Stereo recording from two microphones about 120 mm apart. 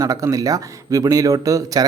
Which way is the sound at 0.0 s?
25° right (ahead or behind).